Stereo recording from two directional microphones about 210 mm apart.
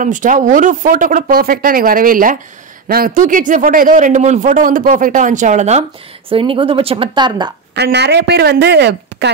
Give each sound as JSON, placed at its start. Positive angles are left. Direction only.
{"t": 0.0, "sound": "speech", "side_deg": -40}
{"t": 7.7, "sound": "speech", "side_deg": -55}